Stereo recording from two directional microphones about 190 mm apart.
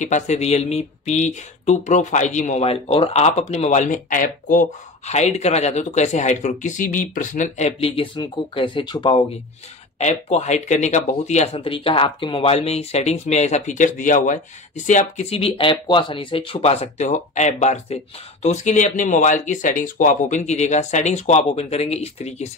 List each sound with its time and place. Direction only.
0.0 s speech: 40° left (ahead or behind)
9.9 s speech: 35° left (ahead or behind)